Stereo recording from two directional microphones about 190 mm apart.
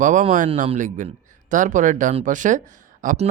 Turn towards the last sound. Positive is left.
turn(degrees=-35)  # may be behind; listen again after turning